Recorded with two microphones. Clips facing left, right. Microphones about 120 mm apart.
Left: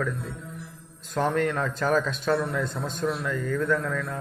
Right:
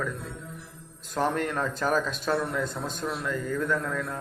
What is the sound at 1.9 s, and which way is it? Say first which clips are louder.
Speech: left 3 dB; 5° right (ahead or behind).